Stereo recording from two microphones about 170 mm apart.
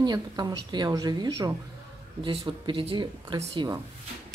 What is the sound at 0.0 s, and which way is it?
Speech, 25° right (ahead or behind).